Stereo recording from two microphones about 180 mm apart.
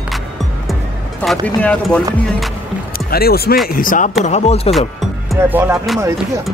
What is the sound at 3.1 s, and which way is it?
Speech, 60° left (ahead or behind).